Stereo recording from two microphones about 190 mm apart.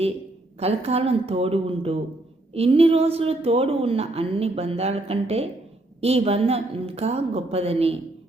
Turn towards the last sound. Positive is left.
turn(degrees=-30)  # may be behind; listen again after turning